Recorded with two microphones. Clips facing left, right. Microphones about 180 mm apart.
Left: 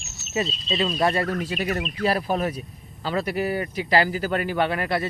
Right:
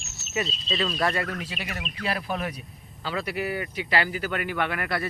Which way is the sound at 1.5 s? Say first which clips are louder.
Left 9 dB; 45° left (ahead or behind).